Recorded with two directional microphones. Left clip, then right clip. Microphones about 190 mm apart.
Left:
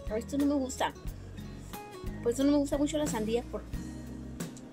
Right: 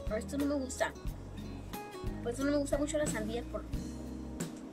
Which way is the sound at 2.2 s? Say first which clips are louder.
Left 6 dB; 15° left (ahead or behind).